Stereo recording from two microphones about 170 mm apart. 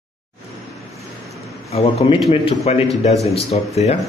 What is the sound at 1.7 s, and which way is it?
Speech, 35° left (ahead or behind).